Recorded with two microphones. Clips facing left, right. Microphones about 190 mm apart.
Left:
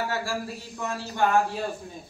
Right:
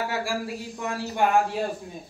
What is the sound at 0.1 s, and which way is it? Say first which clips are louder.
Speech: right 2 dB; 15° right (ahead or behind).